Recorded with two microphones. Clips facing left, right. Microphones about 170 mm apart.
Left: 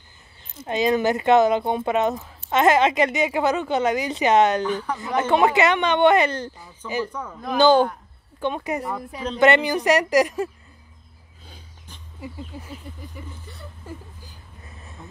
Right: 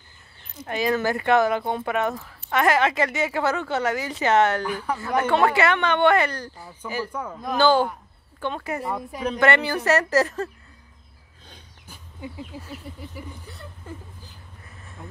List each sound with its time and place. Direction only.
0.7 s speech: 20° left (ahead or behind)
4.6 s a man's voice: 10° right (ahead or behind)
4.9 s speech: 15° left (ahead or behind)
7.1 s a man's voice: 10° right (ahead or behind)
7.5 s speech: 20° left (ahead or behind)
8.8 s speech: centre (ahead or behind)
9.4 s speech: 15° left (ahead or behind)
12.5 s speech: centre (ahead or behind)